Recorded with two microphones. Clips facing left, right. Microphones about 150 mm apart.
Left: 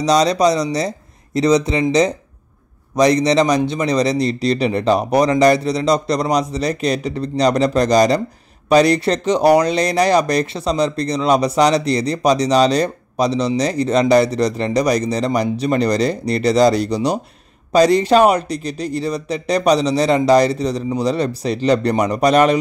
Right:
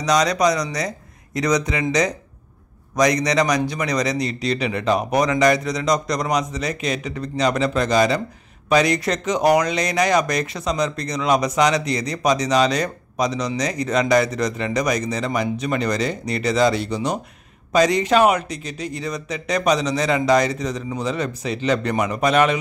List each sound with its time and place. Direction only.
0.0 s speech: 30° left (ahead or behind)